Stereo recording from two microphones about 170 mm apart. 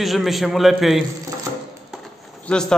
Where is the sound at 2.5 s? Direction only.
5° left (ahead or behind).